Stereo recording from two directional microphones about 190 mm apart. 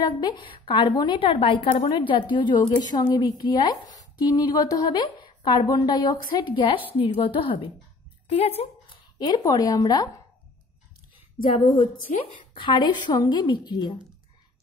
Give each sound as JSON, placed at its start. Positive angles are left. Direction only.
{"t": 0.0, "sound": "a woman's voice", "side_deg": 20}
{"t": 9.2, "sound": "a woman's voice", "side_deg": 20}
{"t": 11.5, "sound": "a woman's voice", "side_deg": 25}